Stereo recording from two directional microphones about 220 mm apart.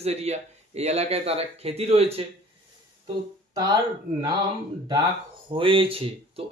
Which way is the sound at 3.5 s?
15° right (ahead or behind).